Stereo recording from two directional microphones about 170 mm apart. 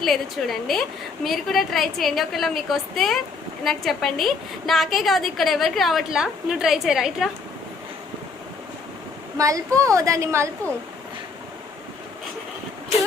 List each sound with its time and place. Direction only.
0.0 s a woman's voice: centre (ahead or behind)
9.4 s a woman's voice: 20° right (ahead or behind)